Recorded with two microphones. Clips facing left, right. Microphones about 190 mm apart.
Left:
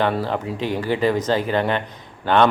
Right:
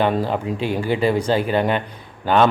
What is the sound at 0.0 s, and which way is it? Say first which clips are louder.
A man's voice: right 2 dB; 15° right (ahead or behind).